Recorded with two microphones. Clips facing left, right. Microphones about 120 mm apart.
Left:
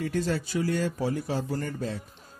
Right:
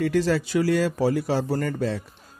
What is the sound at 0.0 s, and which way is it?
Speech, 90° right.